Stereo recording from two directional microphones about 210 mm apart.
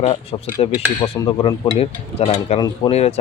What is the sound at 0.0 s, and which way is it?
Speech, 30° left (ahead or behind).